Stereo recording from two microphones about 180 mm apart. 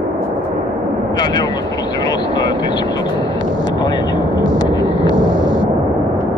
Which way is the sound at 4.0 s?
80° left.